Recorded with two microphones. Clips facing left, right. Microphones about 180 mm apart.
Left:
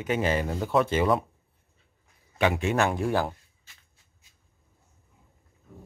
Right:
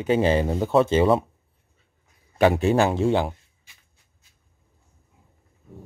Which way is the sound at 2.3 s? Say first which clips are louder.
Right 6 dB; 40° right (ahead or behind).